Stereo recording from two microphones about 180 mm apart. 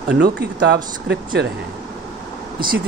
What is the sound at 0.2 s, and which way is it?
Speech, 65° right (ahead or behind).